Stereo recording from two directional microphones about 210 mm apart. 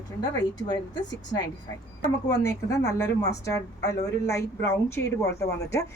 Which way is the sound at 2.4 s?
15° left (ahead or behind).